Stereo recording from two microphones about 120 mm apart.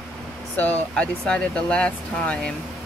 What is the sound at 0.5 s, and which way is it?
Speech, 10° left (ahead or behind).